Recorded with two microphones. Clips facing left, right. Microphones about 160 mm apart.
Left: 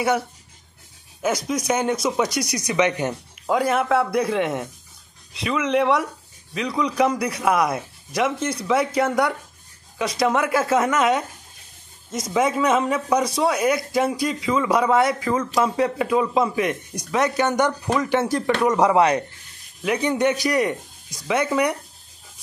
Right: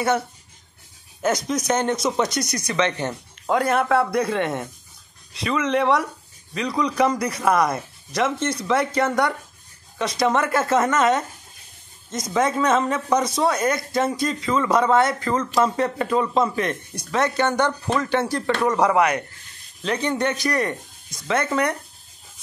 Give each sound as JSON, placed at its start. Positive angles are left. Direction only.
{"t": 1.2, "sound": "a man's voice", "side_deg": 10}
{"t": 3.4, "sound": "a man's voice", "side_deg": 5}
{"t": 19.8, "sound": "a man's voice", "side_deg": 10}